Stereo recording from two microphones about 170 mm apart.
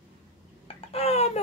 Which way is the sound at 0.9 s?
35° left (ahead or behind).